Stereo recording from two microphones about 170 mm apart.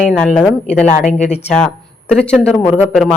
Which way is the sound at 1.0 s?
40° left (ahead or behind).